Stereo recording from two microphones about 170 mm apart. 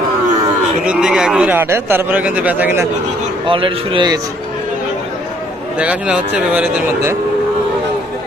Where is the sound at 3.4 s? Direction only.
30° right (ahead or behind).